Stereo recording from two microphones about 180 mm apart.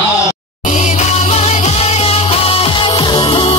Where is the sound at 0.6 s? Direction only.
40° left (ahead or behind).